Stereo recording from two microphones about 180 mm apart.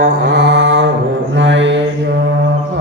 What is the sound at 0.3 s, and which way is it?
Mantra, 75° right (ahead or behind).